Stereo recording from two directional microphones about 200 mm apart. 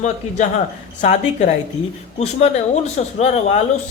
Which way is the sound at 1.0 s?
35° left (ahead or behind).